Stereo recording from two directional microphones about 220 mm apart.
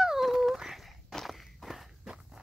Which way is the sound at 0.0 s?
Centre (ahead or behind).